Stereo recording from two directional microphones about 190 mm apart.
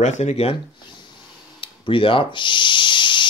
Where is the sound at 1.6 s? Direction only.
25° left (ahead or behind).